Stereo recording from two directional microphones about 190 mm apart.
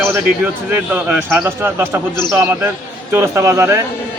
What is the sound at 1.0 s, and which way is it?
Speech, 5° right (ahead or behind).